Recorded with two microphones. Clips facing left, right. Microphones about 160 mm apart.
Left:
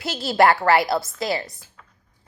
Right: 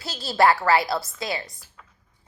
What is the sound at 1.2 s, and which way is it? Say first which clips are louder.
Speech: left 5 dB; 30° left (ahead or behind).